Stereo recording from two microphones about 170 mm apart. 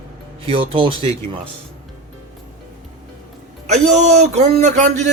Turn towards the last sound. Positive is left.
turn(degrees=-45)  # may be behind; listen again after turning